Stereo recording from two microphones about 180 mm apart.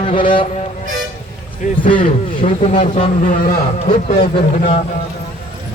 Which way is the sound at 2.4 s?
40° left (ahead or behind).